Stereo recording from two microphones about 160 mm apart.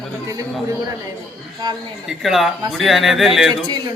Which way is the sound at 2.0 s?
Centre (ahead or behind).